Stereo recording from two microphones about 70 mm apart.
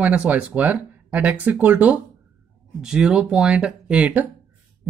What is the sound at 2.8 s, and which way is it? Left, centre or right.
Speech, centre.